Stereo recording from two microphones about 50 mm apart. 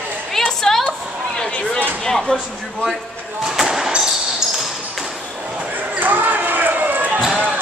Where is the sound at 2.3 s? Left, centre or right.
Centre.